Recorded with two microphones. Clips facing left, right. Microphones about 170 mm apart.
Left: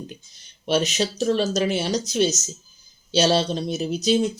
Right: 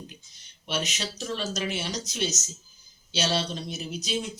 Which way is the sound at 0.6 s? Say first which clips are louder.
Left 10 dB; 30° left (ahead or behind).